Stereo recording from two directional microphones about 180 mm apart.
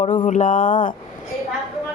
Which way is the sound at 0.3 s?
45° left (ahead or behind).